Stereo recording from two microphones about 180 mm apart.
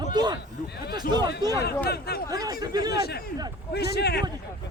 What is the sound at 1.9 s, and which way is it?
Speech, 60° left (ahead or behind).